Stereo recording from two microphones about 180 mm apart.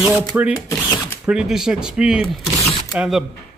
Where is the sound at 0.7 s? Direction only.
15° left (ahead or behind).